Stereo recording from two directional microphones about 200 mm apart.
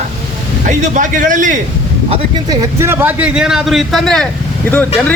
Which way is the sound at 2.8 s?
10° right (ahead or behind).